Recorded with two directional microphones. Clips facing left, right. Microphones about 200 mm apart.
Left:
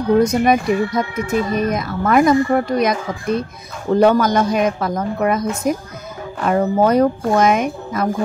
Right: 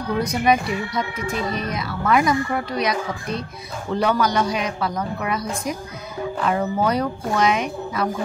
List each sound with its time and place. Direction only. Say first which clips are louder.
0.2 s speech: left 5 dB; 45° left (ahead or behind)